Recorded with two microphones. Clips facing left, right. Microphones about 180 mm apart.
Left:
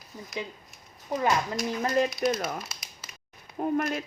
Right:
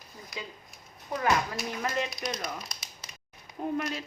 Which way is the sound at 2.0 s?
5° left (ahead or behind).